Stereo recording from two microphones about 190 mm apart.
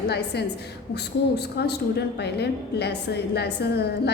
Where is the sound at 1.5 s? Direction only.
60° left (ahead or behind).